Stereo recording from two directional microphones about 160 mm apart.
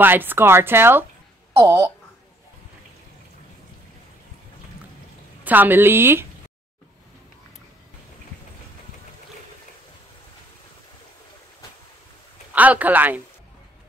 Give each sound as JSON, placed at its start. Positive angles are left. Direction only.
{"t": 0.0, "sound": "a woman's voice", "side_deg": -10}
{"t": 5.4, "sound": "speech", "side_deg": -10}
{"t": 12.5, "sound": "speech", "side_deg": -10}